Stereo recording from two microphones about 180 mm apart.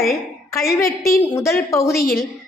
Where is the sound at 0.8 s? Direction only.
55° left (ahead or behind).